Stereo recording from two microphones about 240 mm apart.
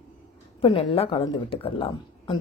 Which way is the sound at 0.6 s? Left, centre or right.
Left.